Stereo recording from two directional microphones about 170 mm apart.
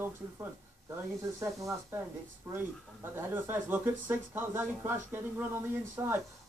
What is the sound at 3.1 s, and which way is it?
Speech, 15° right (ahead or behind).